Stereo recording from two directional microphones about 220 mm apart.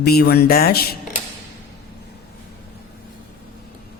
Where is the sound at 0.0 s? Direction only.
45° left (ahead or behind).